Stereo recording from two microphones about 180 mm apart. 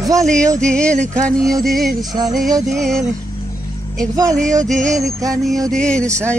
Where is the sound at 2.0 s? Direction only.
20° right (ahead or behind).